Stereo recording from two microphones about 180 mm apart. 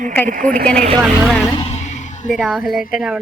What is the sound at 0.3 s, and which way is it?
Speech, 50° right (ahead or behind).